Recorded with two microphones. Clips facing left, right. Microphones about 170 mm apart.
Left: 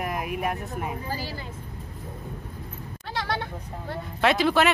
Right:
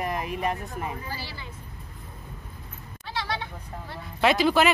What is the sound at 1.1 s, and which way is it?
Speech, 45° left (ahead or behind).